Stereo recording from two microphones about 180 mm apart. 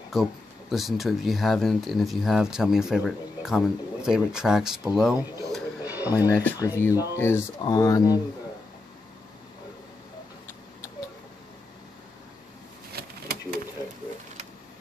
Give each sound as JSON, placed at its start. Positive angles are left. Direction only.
{"t": 0.1, "sound": "speech", "side_deg": 0}
{"t": 5.9, "sound": "speech", "side_deg": 20}
{"t": 12.9, "sound": "a sound", "side_deg": -55}